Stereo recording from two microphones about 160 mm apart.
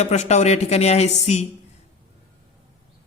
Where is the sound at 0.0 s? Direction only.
45° left (ahead or behind).